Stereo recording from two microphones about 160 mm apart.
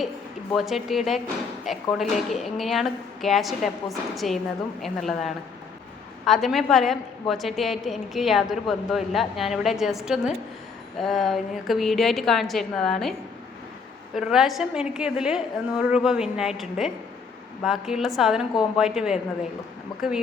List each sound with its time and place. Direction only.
0.5 s a woman's voice: centre (ahead or behind)
14.2 s a woman's voice: centre (ahead or behind)
19.9 s speech: 25° left (ahead or behind)